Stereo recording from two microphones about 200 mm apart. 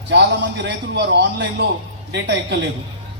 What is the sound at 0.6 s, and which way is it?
A man's voice, 60° right (ahead or behind).